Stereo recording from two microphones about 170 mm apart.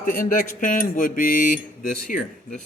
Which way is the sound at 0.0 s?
55° left (ahead or behind).